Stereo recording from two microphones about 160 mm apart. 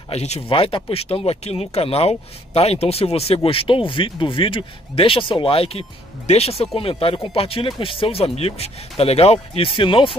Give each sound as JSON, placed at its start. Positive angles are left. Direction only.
{"t": 0.1, "sound": "speech", "side_deg": 40}